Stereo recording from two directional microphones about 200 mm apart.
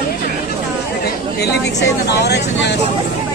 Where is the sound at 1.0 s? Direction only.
55° left (ahead or behind).